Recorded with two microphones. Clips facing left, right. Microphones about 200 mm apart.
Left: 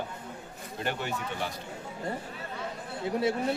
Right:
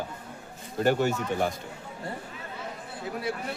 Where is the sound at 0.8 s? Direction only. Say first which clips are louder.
Right 9 dB; 45° right (ahead or behind).